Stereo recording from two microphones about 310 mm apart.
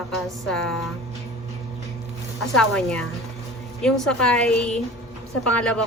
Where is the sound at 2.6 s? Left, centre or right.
Centre.